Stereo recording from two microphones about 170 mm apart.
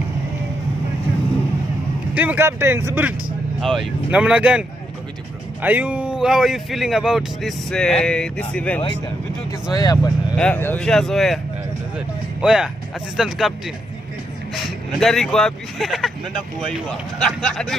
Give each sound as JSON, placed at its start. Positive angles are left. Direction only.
{"t": 2.1, "sound": "speech", "side_deg": -10}
{"t": 3.6, "sound": "speech", "side_deg": 0}
{"t": 9.7, "sound": "speech", "side_deg": 25}
{"t": 10.3, "sound": "speech", "side_deg": 10}
{"t": 14.5, "sound": "speech", "side_deg": 0}
{"t": 17.2, "sound": "speech", "side_deg": 5}